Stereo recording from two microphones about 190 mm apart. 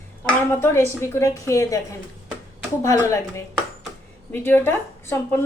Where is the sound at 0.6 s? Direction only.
15° left (ahead or behind).